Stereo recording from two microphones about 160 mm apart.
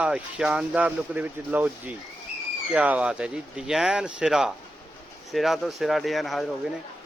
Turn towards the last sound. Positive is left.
turn(degrees=0)  # may be behind; listen again after turning